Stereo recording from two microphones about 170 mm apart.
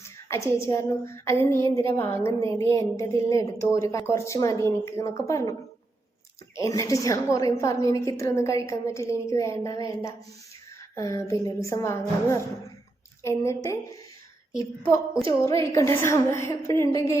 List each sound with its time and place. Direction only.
0.3 s a woman's voice: 15° left (ahead or behind)
6.6 s a woman's voice: 20° left (ahead or behind)